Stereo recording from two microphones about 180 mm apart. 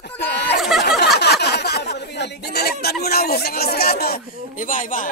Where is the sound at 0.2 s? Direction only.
65° left (ahead or behind).